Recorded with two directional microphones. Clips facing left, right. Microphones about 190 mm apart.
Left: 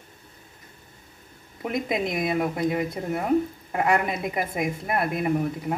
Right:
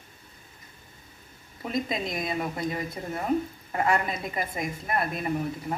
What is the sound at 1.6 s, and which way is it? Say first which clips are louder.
Speech: left 3 dB; 15° left (ahead or behind).